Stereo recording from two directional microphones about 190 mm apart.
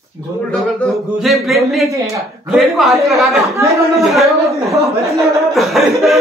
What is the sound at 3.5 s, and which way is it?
Speech, 15° right (ahead or behind).